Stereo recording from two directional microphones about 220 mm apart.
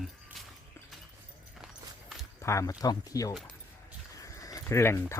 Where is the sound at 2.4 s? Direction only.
15° left (ahead or behind).